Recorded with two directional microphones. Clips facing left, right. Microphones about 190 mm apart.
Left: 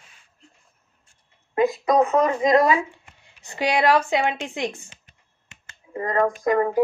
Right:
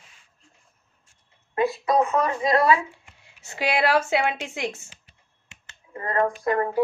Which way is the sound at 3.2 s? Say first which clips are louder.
Left 2 dB; 10° right (ahead or behind).